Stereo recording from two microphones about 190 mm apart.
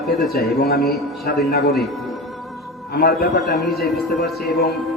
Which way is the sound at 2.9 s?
55° left (ahead or behind).